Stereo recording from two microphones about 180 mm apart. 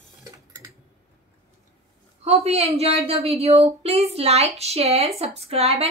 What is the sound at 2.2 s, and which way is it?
A woman's voice, 35° right (ahead or behind).